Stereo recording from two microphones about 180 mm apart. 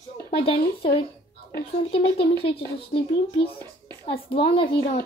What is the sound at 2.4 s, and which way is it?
Speech, 30° left (ahead or behind).